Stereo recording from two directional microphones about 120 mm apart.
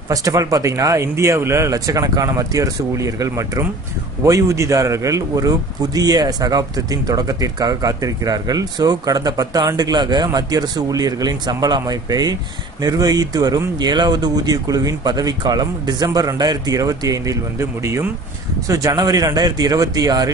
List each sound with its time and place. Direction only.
0.1 s a man's voice: 30° right (ahead or behind)